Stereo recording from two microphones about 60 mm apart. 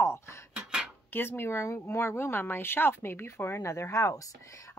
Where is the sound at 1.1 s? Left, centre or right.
Left.